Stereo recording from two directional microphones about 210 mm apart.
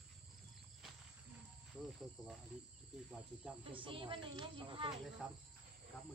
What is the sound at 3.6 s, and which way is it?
Speech, 25° right (ahead or behind).